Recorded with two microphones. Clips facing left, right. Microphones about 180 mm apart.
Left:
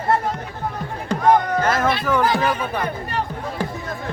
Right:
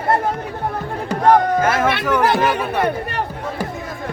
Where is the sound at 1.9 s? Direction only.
70° right (ahead or behind).